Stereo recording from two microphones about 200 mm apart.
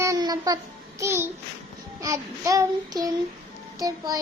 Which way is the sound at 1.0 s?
10° right (ahead or behind).